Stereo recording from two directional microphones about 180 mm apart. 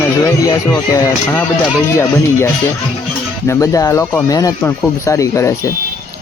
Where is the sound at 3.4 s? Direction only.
20° left (ahead or behind).